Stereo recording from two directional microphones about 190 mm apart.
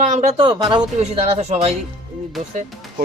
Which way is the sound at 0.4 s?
25° right (ahead or behind).